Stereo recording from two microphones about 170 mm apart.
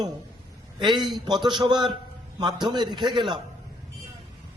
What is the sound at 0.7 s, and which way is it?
A man's voice, 25° right (ahead or behind).